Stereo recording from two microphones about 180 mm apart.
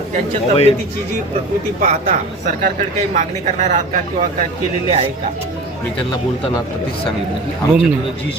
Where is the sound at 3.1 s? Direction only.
40° right (ahead or behind).